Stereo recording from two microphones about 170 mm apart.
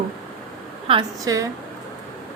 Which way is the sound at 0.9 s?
25° right (ahead or behind).